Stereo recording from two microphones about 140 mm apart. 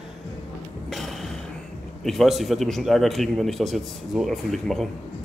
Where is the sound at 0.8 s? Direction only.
Centre (ahead or behind).